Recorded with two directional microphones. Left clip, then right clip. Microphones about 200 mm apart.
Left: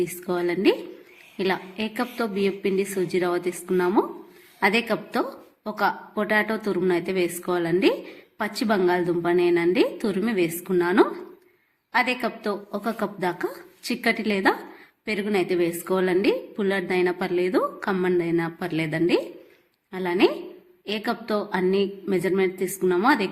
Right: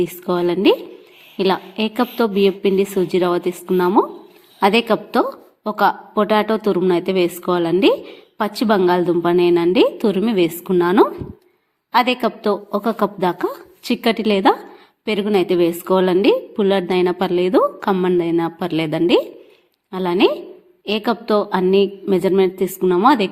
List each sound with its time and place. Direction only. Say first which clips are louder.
0.0 s a woman's voice: right 7 dB; 25° right (ahead or behind)